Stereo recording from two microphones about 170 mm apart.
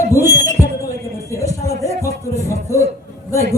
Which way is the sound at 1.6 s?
20° left (ahead or behind).